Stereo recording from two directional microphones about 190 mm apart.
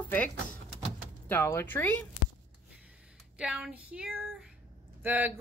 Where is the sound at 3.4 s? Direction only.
5° right (ahead or behind).